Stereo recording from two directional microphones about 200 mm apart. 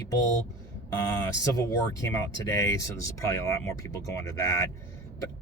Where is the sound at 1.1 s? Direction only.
20° left (ahead or behind).